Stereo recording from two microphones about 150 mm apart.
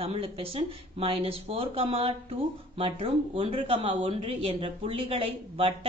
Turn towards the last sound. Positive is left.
turn(degrees=-40)  # may be behind; listen again after turning